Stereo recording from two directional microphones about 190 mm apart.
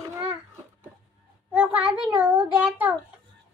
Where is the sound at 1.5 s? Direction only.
5° right (ahead or behind).